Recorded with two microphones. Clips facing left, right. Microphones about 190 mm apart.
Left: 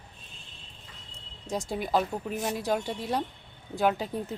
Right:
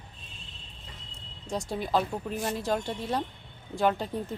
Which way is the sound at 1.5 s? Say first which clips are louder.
Even; 5° left (ahead or behind).